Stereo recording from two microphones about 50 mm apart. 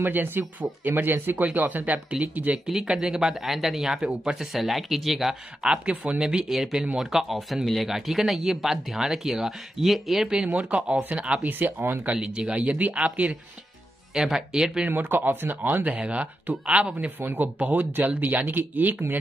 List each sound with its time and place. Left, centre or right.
0.0 s speech: right
2.5 s speech: centre
5.6 s speech: centre
10.3 s speech: right
11.4 s speech: right
12.1 s speech: right
14.1 s speech: centre
14.9 s speech: right
15.8 s speech: right